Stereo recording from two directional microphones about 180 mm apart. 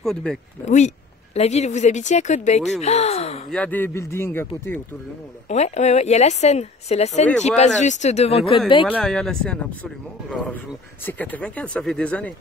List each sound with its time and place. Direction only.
0.0 s speech: 5° left (ahead or behind)
0.7 s speech: 40° left (ahead or behind)
3.5 s a man's voice: 10° left (ahead or behind)
5.5 s speech: 40° left (ahead or behind)
8.9 s a man's voice: 5° left (ahead or behind)